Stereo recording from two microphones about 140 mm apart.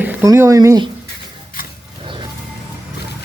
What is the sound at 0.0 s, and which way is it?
Speech, 20° right (ahead or behind).